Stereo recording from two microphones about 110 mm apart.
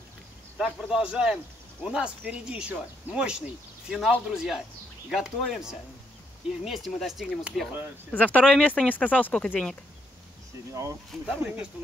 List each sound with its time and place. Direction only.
0.6 s speech: 5° right (ahead or behind)
8.1 s speech: 15° left (ahead or behind)
10.7 s speech: 30° right (ahead or behind)
11.2 s speech: 10° right (ahead or behind)